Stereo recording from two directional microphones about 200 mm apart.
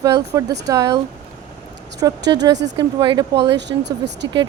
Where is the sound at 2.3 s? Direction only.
20° right (ahead or behind).